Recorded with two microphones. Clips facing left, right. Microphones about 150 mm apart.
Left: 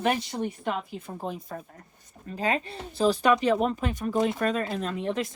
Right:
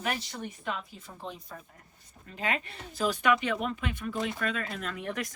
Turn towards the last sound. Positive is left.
turn(degrees=25)  # may be behind; listen again after turning